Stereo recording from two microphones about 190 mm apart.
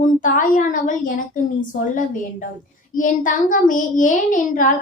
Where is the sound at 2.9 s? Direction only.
45° left (ahead or behind).